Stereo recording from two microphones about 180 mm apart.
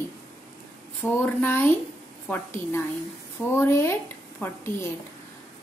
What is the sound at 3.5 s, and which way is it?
A woman's voice, 15° left (ahead or behind).